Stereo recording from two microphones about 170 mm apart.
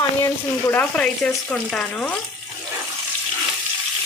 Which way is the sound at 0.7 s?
10° left (ahead or behind).